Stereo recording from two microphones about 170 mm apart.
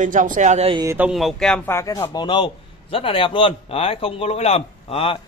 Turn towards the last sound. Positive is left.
turn(degrees=35)  # may be behind; listen again after turning